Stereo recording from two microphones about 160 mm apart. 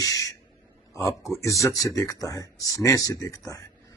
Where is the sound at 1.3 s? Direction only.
20° left (ahead or behind).